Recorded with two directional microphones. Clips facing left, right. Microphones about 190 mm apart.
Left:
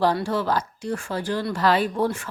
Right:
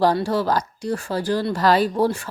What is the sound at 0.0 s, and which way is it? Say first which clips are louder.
Speech: right 3 dB; 40° right (ahead or behind).